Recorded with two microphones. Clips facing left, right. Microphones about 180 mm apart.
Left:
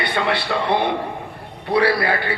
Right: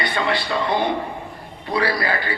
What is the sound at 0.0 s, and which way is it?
A man's voice, 65° left (ahead or behind).